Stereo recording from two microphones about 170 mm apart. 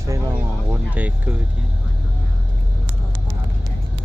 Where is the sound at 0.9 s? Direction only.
10° right (ahead or behind).